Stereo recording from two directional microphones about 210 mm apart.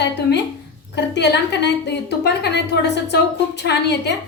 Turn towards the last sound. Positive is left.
turn(degrees=55)  # may be behind; listen again after turning